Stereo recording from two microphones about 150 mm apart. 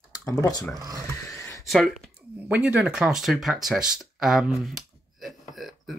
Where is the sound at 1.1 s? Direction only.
20° left (ahead or behind).